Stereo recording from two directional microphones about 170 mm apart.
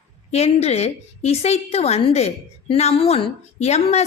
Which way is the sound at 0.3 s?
40° left (ahead or behind).